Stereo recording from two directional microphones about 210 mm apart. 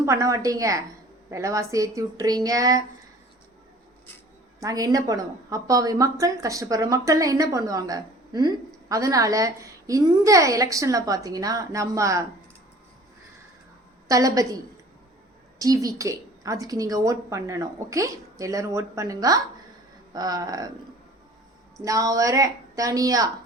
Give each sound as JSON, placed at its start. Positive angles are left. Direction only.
{"t": 0.0, "sound": "a woman's voice", "side_deg": -15}
{"t": 4.6, "sound": "a woman's voice", "side_deg": -15}
{"t": 14.1, "sound": "a woman's voice", "side_deg": -15}
{"t": 15.5, "sound": "a woman's voice", "side_deg": -15}
{"t": 21.8, "sound": "a woman's voice", "side_deg": -15}